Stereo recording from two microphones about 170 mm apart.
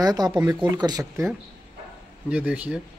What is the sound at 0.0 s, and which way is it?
Speech, 25° right (ahead or behind).